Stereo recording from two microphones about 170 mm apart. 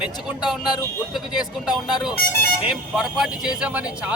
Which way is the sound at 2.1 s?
65° left (ahead or behind).